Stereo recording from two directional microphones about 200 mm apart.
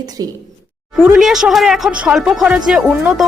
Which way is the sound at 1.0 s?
5° right (ahead or behind).